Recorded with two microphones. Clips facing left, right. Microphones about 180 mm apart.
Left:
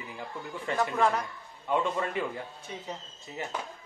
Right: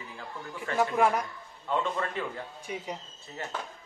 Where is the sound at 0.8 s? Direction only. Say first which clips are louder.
Right 2 dB; 10° right (ahead or behind).